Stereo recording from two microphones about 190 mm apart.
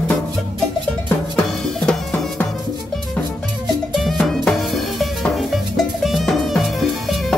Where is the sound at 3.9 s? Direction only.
Centre (ahead or behind).